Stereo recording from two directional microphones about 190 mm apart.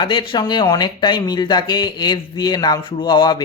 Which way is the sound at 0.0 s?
25° left (ahead or behind).